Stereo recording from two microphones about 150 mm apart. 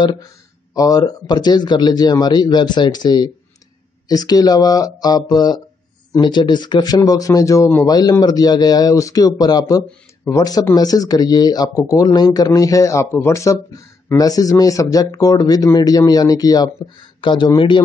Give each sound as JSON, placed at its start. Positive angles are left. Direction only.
{"t": 0.0, "sound": "speech", "side_deg": 25}